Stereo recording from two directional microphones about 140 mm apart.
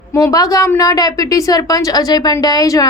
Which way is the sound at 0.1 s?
25° left (ahead or behind).